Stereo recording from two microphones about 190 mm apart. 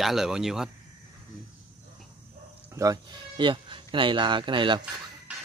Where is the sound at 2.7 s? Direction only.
20° right (ahead or behind).